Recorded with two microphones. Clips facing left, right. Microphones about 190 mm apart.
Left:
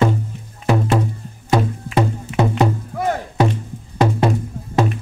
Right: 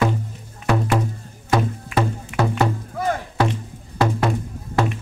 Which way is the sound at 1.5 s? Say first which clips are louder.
Left 2 dB; 20° left (ahead or behind).